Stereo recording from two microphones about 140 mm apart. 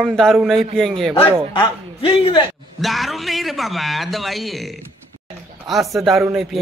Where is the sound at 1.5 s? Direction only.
35° left (ahead or behind).